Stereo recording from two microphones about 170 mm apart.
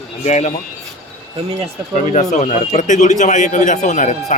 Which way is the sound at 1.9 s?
40° left (ahead or behind).